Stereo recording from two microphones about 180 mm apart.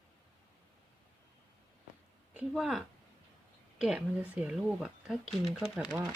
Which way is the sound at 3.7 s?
5° right (ahead or behind).